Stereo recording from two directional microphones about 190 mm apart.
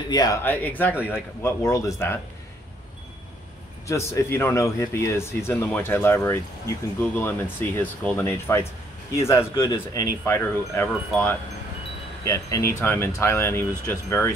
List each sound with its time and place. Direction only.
0.1 s speech: 20° left (ahead or behind)
0.4 s speech: 10° left (ahead or behind)
3.8 s speech: 15° left (ahead or behind)